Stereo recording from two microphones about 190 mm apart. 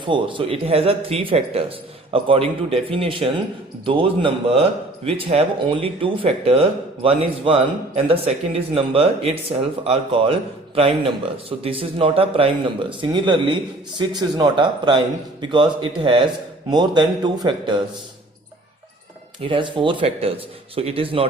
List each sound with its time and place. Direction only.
0.0 s speech: 25° right (ahead or behind)
19.4 s speech: 25° right (ahead or behind)